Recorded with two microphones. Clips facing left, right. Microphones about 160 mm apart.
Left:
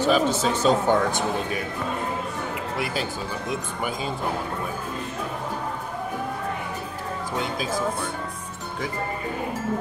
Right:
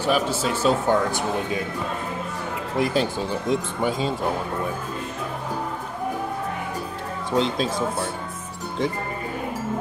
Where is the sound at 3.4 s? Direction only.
25° right (ahead or behind).